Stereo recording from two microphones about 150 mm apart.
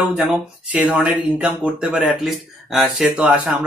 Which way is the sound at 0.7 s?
10° right (ahead or behind).